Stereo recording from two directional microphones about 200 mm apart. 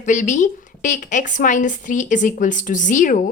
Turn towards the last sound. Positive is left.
turn(degrees=40)  # may be behind; listen again after turning